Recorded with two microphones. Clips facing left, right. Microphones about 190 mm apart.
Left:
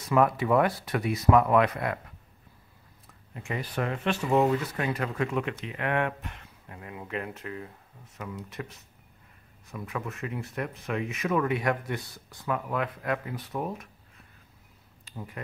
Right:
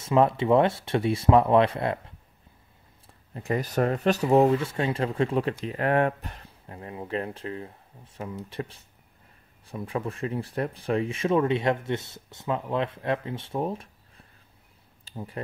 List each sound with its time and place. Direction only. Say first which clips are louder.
0.0 s speech: right 2 dB; 25° right (ahead or behind)